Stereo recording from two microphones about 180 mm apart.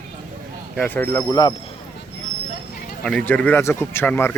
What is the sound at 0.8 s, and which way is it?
Speech, 10° left (ahead or behind).